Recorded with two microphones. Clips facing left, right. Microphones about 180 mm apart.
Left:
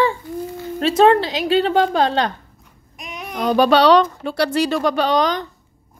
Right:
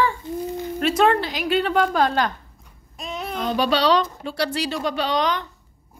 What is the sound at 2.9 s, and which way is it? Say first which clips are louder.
Child singing: right 2 dB; 15° left (ahead or behind).